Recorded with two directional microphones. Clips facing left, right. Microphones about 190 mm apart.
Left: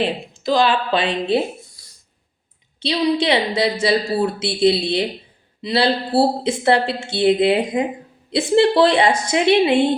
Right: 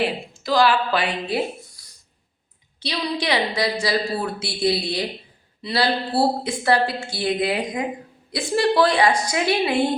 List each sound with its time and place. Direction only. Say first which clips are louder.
0.0 s a woman's voice: left 3 dB; 20° left (ahead or behind)
2.8 s a woman's voice: left 7 dB; 25° left (ahead or behind)